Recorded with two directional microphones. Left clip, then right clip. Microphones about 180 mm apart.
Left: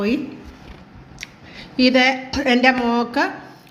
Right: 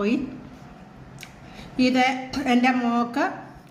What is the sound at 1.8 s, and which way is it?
A woman's voice, 45° left (ahead or behind).